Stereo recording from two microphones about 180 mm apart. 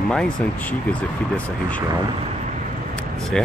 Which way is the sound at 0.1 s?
5° left (ahead or behind).